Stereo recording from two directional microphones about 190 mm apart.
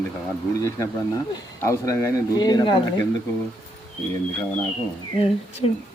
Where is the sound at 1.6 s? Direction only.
15° left (ahead or behind).